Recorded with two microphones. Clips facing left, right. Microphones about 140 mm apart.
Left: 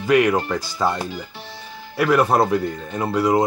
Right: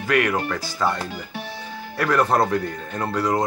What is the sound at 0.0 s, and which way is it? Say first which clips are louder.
Speech: left 4 dB; 15° left (ahead or behind).